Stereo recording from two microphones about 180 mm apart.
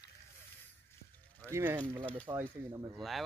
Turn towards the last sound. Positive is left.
turn(degrees=0)  # may be behind; listen again after turning